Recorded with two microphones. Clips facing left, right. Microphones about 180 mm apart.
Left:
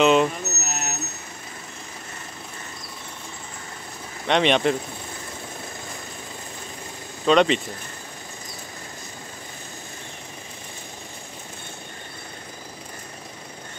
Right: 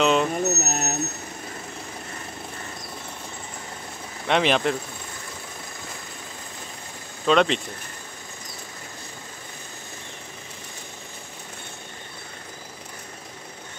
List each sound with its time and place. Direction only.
0.0 s speech: centre (ahead or behind)
0.3 s vehicle: 40° right (ahead or behind)
4.3 s speech: centre (ahead or behind)
7.2 s speech: centre (ahead or behind)